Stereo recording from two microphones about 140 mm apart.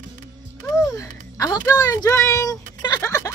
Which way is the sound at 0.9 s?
25° left (ahead or behind).